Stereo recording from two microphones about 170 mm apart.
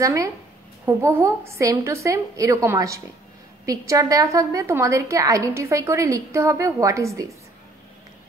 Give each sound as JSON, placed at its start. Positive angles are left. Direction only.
{"t": 0.0, "sound": "a woman's voice", "side_deg": -20}